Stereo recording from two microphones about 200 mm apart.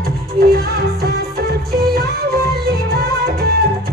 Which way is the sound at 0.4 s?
50° right (ahead or behind).